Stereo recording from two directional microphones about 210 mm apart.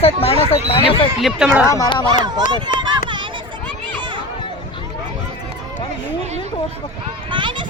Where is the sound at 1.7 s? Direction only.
20° left (ahead or behind).